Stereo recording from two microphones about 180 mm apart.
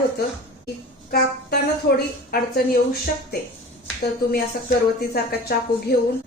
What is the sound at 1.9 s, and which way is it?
A woman's voice, 55° left (ahead or behind).